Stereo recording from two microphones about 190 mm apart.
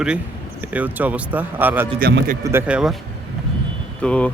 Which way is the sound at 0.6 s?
10° right (ahead or behind).